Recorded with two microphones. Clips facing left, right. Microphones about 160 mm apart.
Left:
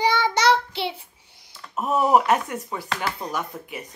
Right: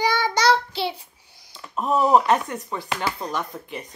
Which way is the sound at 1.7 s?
10° left (ahead or behind).